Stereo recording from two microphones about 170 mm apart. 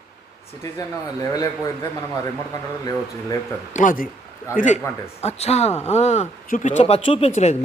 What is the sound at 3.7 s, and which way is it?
Speech, 55° left (ahead or behind).